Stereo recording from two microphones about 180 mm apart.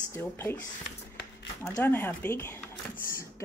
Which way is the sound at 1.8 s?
10° left (ahead or behind).